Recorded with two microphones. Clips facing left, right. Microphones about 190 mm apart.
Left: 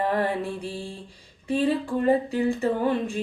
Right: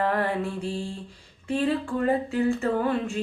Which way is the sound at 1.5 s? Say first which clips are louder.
Left 2 dB; 15° left (ahead or behind).